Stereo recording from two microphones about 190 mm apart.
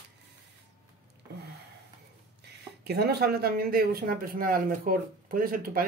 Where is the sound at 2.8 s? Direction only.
60° right (ahead or behind).